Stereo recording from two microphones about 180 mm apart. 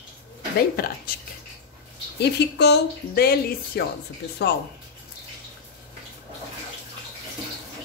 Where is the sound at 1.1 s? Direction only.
55° left (ahead or behind).